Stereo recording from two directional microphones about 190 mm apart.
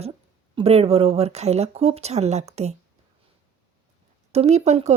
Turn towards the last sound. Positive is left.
turn(degrees=-35)  # may be behind; listen again after turning